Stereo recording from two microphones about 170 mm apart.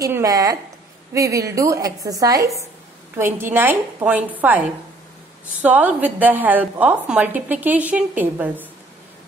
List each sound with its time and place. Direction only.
0.0 s a woman's voice: 20° right (ahead or behind)